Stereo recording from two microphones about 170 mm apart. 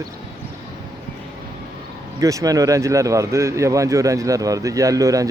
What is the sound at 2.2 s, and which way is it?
Speech, 20° right (ahead or behind).